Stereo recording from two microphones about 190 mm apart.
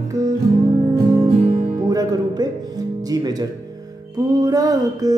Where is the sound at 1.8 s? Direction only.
20° right (ahead or behind).